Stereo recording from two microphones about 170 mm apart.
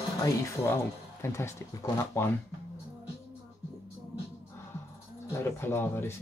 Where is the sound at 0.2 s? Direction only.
15° left (ahead or behind).